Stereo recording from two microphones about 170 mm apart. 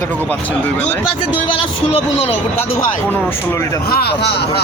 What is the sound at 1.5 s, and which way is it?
Speech, 35° left (ahead or behind).